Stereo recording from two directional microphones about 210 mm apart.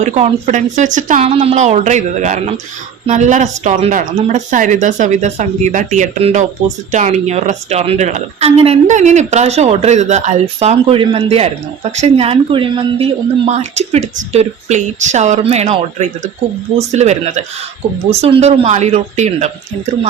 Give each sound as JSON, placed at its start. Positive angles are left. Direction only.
{"t": 0.0, "sound": "a woman's voice", "side_deg": -35}